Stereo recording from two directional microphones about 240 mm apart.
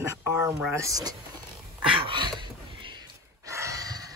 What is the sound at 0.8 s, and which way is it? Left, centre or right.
Speech, centre.